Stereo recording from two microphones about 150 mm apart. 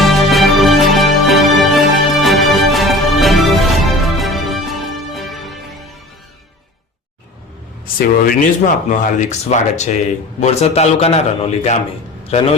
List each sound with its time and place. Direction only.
0.0 s music: centre (ahead or behind)
7.9 s a man's voice: 70° left (ahead or behind); by 11.8 s 45° left (ahead or behind)